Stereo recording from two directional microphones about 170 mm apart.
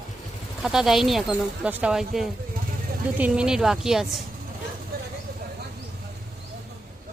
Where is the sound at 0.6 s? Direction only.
5° right (ahead or behind).